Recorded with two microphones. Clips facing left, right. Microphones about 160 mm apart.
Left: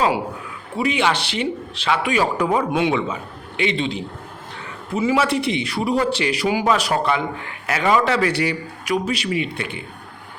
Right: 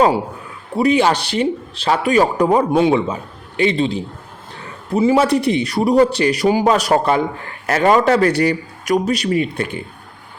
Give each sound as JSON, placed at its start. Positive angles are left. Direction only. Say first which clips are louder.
{"t": 0.8, "sound": "a man's voice", "louder": "right 6 dB", "side_deg": -40}